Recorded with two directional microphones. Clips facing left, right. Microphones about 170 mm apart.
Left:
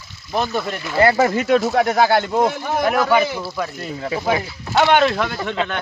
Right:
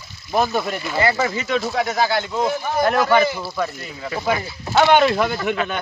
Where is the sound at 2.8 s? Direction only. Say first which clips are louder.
Even; 5° left (ahead or behind).